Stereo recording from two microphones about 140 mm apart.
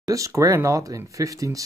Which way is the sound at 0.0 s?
25° right (ahead or behind).